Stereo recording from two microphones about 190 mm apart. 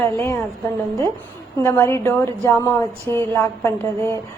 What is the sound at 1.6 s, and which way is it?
A woman's voice, 10° left (ahead or behind).